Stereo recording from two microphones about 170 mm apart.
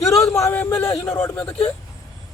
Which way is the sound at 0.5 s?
10° left (ahead or behind).